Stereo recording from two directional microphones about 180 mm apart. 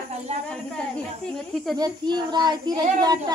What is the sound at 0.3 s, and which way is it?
Speech, 40° right (ahead or behind).